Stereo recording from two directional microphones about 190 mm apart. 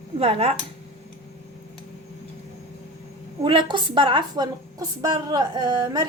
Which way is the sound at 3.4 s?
25° right (ahead or behind).